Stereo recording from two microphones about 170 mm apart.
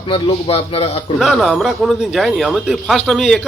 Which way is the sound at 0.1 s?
35° left (ahead or behind).